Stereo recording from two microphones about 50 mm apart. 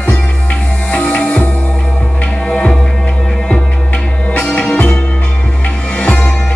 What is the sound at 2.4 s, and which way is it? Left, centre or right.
Music, centre.